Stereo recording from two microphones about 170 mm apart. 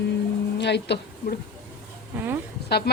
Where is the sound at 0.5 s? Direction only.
90° left.